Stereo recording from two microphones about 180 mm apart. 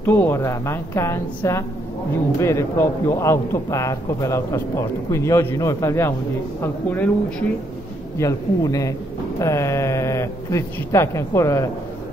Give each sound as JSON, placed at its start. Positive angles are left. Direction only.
{"t": 0.0, "sound": "a man's voice", "side_deg": 10}
{"t": 8.2, "sound": "a man's voice", "side_deg": 20}